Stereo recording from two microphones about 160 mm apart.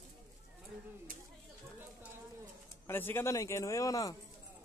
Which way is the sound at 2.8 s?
15° left (ahead or behind).